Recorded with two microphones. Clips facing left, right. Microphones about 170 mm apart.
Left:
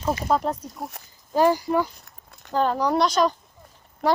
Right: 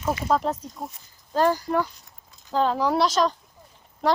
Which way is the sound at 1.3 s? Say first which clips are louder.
Left 2 dB; 10° left (ahead or behind).